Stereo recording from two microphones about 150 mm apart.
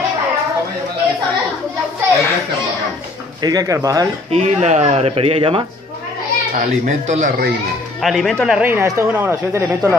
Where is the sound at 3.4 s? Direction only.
25° right (ahead or behind).